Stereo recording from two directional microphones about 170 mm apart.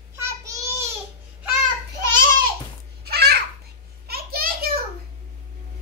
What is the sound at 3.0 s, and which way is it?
Babbling, 70° right (ahead or behind).